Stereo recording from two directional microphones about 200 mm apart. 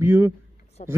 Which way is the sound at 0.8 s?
35° left (ahead or behind).